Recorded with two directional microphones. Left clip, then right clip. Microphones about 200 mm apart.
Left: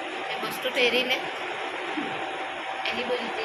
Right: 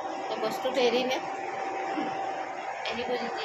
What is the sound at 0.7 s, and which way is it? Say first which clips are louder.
Speech: left 3 dB; 20° right (ahead or behind).